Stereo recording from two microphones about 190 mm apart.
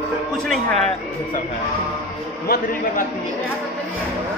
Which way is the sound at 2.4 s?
50° left (ahead or behind).